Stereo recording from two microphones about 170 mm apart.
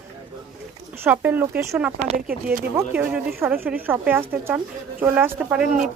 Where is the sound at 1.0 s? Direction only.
10° right (ahead or behind).